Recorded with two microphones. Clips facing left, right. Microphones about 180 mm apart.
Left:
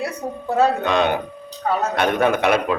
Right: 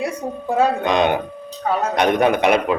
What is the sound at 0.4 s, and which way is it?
A man's voice, 10° right (ahead or behind).